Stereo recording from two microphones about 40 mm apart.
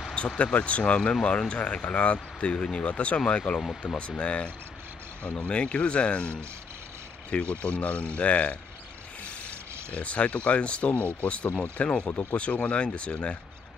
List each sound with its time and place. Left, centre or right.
0.4 s speech: left
2.1 s speech: left
9.9 s speech: left